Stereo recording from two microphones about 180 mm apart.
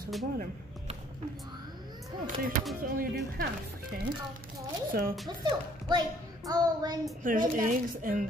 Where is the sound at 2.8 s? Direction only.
55° right (ahead or behind).